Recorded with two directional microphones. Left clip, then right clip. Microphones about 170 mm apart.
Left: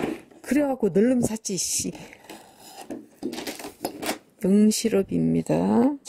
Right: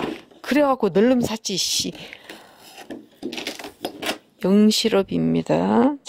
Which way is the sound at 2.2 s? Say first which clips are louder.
Right 3 dB; 20° right (ahead or behind).